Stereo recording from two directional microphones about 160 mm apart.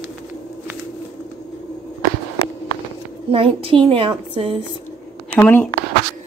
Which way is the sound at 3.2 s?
35° right (ahead or behind).